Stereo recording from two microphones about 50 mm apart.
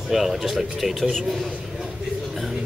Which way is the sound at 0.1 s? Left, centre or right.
Centre.